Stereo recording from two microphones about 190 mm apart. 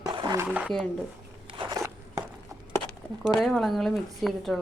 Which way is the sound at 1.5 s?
20° right (ahead or behind).